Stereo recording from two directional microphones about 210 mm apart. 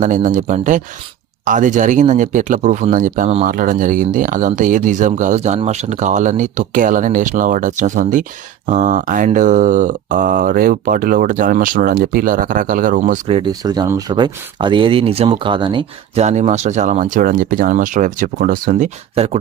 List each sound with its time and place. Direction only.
0.0 s speech: 35° right (ahead or behind)
13.2 s speech: 25° right (ahead or behind)